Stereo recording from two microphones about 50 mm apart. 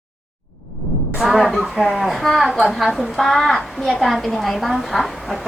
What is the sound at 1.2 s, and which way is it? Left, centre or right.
A woman's voice, centre.